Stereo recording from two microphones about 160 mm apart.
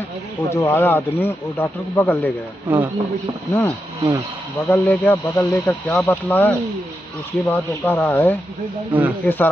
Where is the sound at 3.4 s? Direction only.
10° left (ahead or behind).